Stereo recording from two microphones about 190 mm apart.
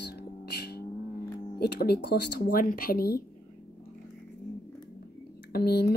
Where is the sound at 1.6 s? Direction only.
55° left (ahead or behind).